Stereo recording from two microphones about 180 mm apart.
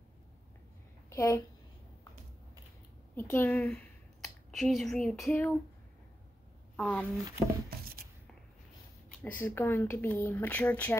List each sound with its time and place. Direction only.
1.1 s a woman's voice: 15° left (ahead or behind)
3.2 s a woman's voice: 10° left (ahead or behind)
6.8 s speech: 5° left (ahead or behind)
9.2 s speech: 10° left (ahead or behind)